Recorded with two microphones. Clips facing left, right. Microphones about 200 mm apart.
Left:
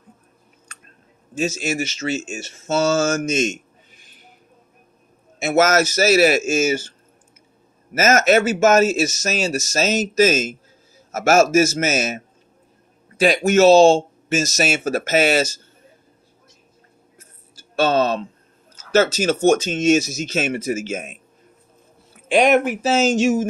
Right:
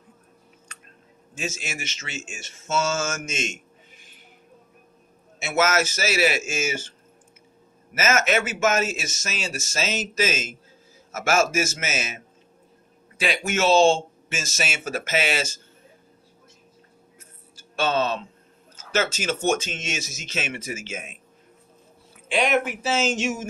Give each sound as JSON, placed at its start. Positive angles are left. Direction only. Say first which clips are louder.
{"t": 1.3, "sound": "speech", "louder": "left 10 dB", "side_deg": 35}
{"t": 5.4, "sound": "speech", "louder": "left 6 dB", "side_deg": 45}
{"t": 7.9, "sound": "speech", "louder": "left 7 dB", "side_deg": 40}
{"t": 13.2, "sound": "speech", "louder": "left 10 dB", "side_deg": 40}
{"t": 17.2, "sound": "a sound", "louder": "left 1 dB", "side_deg": 40}
{"t": 18.9, "sound": "speech", "louder": "left 8 dB", "side_deg": 40}
{"t": 22.3, "sound": "speech", "louder": "left 7 dB", "side_deg": 45}